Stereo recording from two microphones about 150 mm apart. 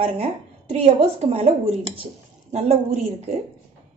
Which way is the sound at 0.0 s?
45° right (ahead or behind).